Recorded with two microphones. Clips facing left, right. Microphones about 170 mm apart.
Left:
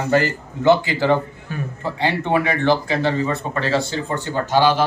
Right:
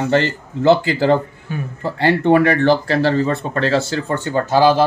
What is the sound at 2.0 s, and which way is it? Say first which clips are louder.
Speech: right 7 dB; 55° right (ahead or behind).